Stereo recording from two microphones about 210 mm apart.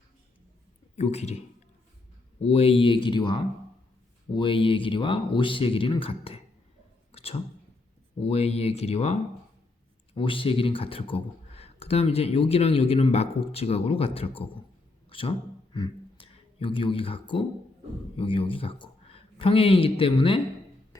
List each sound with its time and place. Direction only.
0.9 s a man's voice: 30° left (ahead or behind)
2.4 s speech: 30° left (ahead or behind)
7.1 s a sound: 25° left (ahead or behind)
8.3 s speech: 30° left (ahead or behind)
10.2 s speech: 25° left (ahead or behind)